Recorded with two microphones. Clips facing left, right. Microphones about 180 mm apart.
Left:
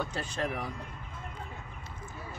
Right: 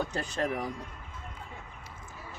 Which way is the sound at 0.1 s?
40° right (ahead or behind).